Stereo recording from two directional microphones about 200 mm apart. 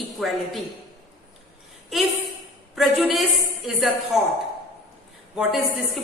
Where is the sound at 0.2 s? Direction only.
Centre (ahead or behind).